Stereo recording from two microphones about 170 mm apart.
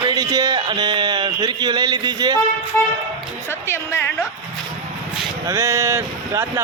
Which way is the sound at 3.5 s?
15° left (ahead or behind).